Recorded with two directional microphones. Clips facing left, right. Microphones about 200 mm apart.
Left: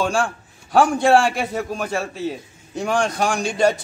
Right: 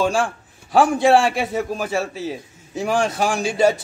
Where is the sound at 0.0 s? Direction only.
Centre (ahead or behind).